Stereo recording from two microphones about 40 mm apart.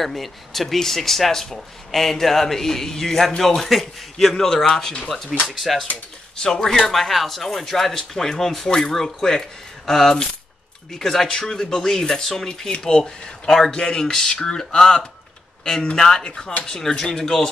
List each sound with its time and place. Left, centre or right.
0.0 s speech: centre
5.5 s speech: centre
6.3 s speech: centre
6.6 s speech: centre
12.8 s speech: left